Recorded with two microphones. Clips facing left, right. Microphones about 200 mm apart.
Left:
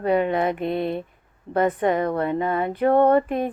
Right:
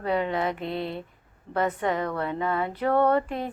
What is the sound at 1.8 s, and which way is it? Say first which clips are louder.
Mantra: left 6 dB; 50° left (ahead or behind).